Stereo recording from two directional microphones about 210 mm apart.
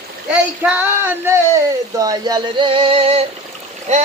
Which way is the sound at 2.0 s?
15° right (ahead or behind).